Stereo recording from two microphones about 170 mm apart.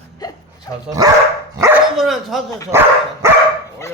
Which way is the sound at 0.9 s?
20° right (ahead or behind).